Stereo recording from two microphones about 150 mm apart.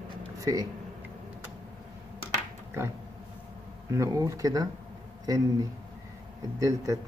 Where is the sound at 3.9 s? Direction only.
20° right (ahead or behind).